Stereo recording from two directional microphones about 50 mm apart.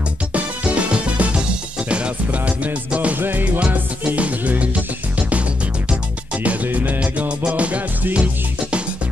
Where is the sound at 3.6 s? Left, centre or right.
Right.